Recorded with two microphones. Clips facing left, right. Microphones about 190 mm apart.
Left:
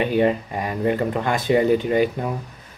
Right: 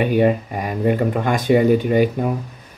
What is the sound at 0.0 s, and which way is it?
Speech, 15° right (ahead or behind).